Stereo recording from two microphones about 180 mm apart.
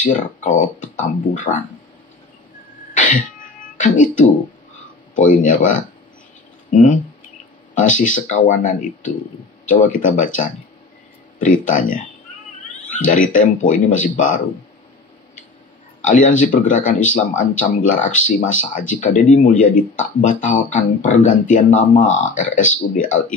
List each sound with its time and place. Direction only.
0.0 s speech: 45° left (ahead or behind)
2.9 s a sound: 45° left (ahead or behind)
5.1 s speech: 45° left (ahead or behind)
16.0 s speech: 45° left (ahead or behind)